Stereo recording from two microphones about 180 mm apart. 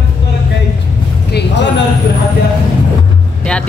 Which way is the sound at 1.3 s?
70° left (ahead or behind).